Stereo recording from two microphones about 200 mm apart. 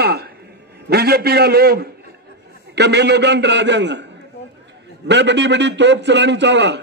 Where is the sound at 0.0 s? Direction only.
55° right (ahead or behind).